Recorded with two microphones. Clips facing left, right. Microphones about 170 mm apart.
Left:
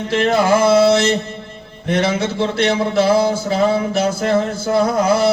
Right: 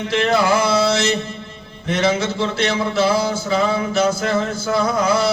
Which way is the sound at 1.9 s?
55° left (ahead or behind).